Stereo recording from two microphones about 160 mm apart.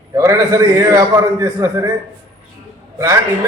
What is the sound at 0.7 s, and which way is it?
A man's voice, 20° right (ahead or behind).